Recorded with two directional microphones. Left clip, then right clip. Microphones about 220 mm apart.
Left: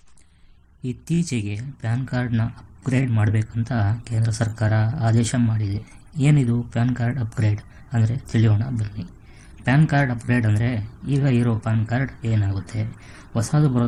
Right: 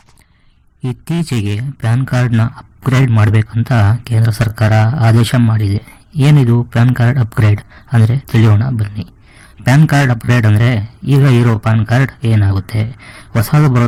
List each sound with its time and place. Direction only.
0.8 s speech: 25° right (ahead or behind)